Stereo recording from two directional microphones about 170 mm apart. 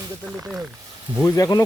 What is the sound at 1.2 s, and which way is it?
Speech, 20° left (ahead or behind).